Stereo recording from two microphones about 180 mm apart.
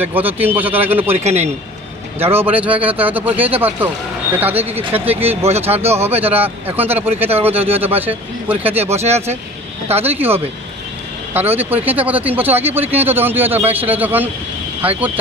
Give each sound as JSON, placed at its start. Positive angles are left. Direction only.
{"t": 0.0, "sound": "speech", "side_deg": -10}
{"t": 1.1, "sound": "speech", "side_deg": -40}
{"t": 2.1, "sound": "speech", "side_deg": -10}
{"t": 5.4, "sound": "speech", "side_deg": -35}
{"t": 5.7, "sound": "speech", "side_deg": -15}
{"t": 9.0, "sound": "speech", "side_deg": -35}
{"t": 10.1, "sound": "speech", "side_deg": -10}
{"t": 11.5, "sound": "speech", "side_deg": -10}